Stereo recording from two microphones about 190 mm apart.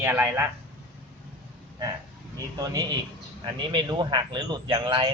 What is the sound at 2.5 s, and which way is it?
Speech, 20° right (ahead or behind).